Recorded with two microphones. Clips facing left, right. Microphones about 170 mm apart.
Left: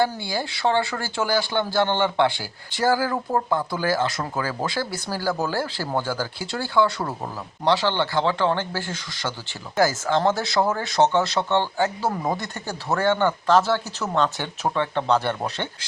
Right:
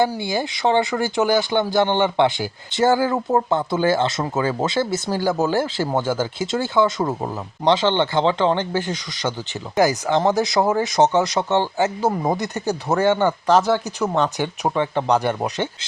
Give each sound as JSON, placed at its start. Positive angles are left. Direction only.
{"t": 0.0, "sound": "speech", "side_deg": -20}